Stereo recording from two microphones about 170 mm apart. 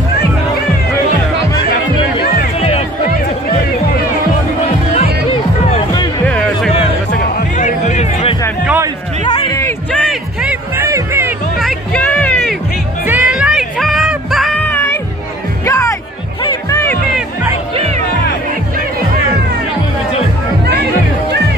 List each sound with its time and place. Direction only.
6.2 s music: 5° left (ahead or behind)
7.2 s music: 45° left (ahead or behind)
9.2 s music: 25° left (ahead or behind)
10.4 s music: 15° right (ahead or behind)
11.6 s music: 5° left (ahead or behind)
13.0 s music: 10° right (ahead or behind)
14.6 s music: 10° left (ahead or behind)